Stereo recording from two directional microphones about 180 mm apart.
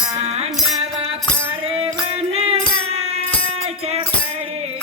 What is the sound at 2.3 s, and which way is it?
Music, 35° right (ahead or behind).